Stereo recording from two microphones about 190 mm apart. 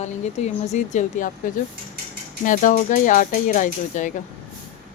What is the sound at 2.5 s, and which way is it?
Speech, 45° left (ahead or behind).